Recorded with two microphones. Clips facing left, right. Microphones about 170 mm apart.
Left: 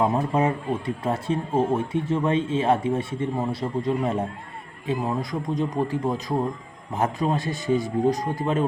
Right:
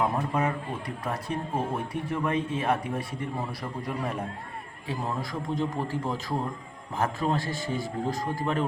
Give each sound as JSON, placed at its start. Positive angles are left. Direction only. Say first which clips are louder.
{"t": 0.3, "sound": "a man's voice", "louder": "left 5 dB", "side_deg": 25}